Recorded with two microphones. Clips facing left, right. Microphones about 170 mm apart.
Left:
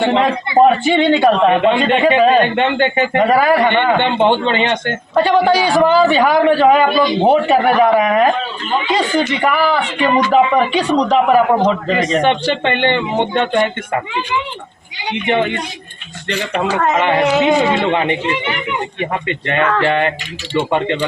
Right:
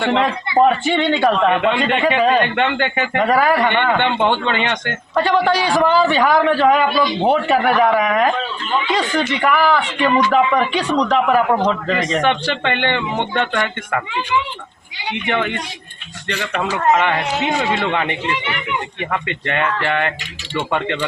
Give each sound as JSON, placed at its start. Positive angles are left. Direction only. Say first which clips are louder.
{"t": 0.0, "sound": "a man's voice", "louder": "left 3 dB", "side_deg": 20}
{"t": 3.3, "sound": "a man's voice", "louder": "left 2 dB", "side_deg": 20}
{"t": 5.2, "sound": "a man's voice", "louder": "left 4 dB", "side_deg": 10}
{"t": 11.3, "sound": "a man's voice", "louder": "left 3 dB", "side_deg": 25}
{"t": 15.1, "sound": "a man's voice", "louder": "left 4 dB", "side_deg": 30}
{"t": 16.7, "sound": "speech", "louder": "right 2 dB", "side_deg": 90}
{"t": 17.0, "sound": "speech", "louder": "left 4 dB", "side_deg": 30}
{"t": 17.2, "sound": "speech", "louder": "left 8 dB", "side_deg": 90}
{"t": 17.8, "sound": "a man's voice", "louder": "left 4 dB", "side_deg": 30}
{"t": 19.8, "sound": "a man's voice", "louder": "left 5 dB", "side_deg": 30}